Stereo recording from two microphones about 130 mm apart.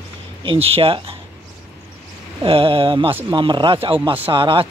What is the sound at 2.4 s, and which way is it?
Speech, 45° right (ahead or behind).